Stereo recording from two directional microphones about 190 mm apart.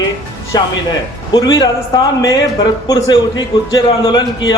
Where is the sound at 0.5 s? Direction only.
20° left (ahead or behind).